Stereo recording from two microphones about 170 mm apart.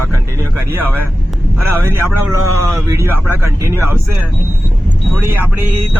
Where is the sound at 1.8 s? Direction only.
15° right (ahead or behind).